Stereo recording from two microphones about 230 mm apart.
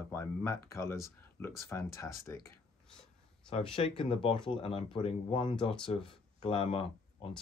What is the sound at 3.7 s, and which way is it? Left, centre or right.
Speech, left.